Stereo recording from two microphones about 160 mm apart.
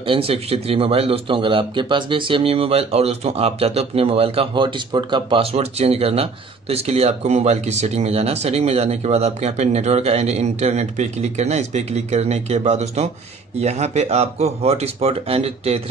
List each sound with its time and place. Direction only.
0.0 s speech: 35° right (ahead or behind)